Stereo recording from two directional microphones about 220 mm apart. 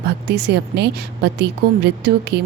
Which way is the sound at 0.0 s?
50° right (ahead or behind).